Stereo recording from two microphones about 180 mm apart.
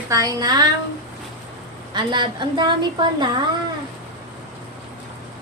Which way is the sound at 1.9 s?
25° right (ahead or behind).